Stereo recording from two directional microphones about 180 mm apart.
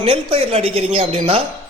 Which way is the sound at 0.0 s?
30° right (ahead or behind).